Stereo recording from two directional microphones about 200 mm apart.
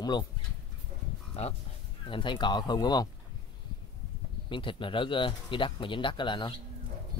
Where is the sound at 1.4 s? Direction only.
30° left (ahead or behind).